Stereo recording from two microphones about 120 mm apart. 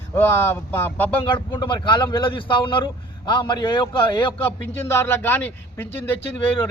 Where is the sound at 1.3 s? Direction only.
40° left (ahead or behind).